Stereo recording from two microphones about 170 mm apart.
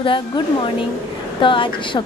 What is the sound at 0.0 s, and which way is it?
A woman's voice, 30° left (ahead or behind).